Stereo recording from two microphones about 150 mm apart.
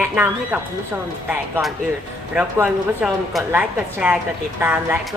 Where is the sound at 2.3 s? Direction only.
10° right (ahead or behind).